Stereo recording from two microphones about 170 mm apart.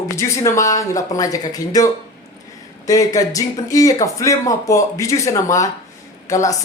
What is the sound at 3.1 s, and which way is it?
Speech, 20° left (ahead or behind).